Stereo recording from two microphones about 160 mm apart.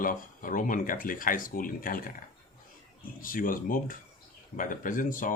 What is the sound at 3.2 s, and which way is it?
Speech, 60° left (ahead or behind).